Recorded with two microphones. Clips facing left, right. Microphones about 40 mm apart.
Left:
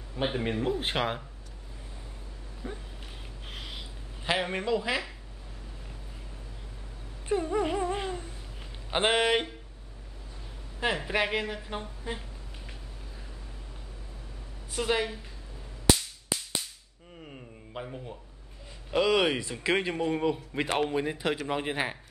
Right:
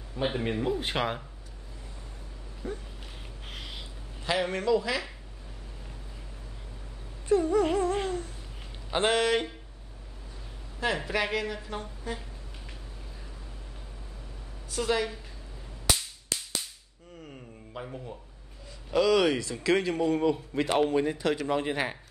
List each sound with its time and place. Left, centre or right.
0.1 s speech: centre
2.6 s speech: left
3.4 s a sound: centre
4.2 s speech: centre
7.2 s speech: left
7.6 s a sound: centre
8.9 s speech: left
11.1 s speech: centre
14.7 s speech: left
16.3 s a sound: centre
18.9 s speech: left
20.6 s a man's voice: left
20.9 s speech: centre